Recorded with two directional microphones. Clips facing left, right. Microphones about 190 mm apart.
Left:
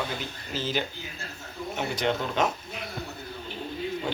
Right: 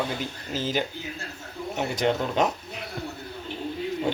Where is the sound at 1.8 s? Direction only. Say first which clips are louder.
Right 3 dB; 40° right (ahead or behind).